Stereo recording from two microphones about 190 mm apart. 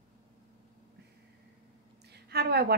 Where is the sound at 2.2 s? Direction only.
55° right (ahead or behind).